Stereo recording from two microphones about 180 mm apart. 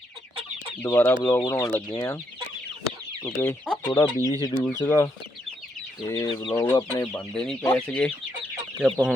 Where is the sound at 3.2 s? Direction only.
10° left (ahead or behind).